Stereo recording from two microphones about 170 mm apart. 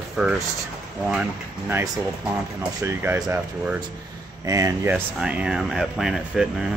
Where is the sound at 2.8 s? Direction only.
15° right (ahead or behind).